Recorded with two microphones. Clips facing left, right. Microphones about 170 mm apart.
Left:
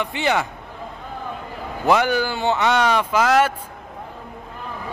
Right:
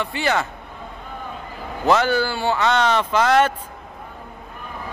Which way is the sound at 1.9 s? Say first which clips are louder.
Even; 15° left (ahead or behind).